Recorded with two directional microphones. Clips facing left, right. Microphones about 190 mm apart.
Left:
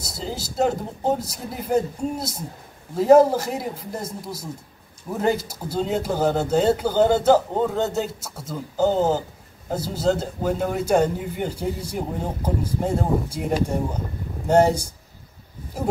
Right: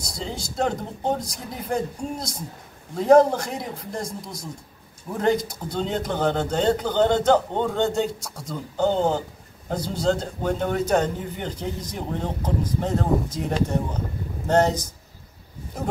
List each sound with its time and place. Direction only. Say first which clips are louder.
0.2 s speech: left 3 dB; 5° left (ahead or behind)